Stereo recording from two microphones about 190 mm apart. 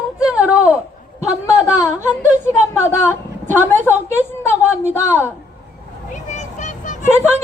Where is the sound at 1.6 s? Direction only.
5° right (ahead or behind).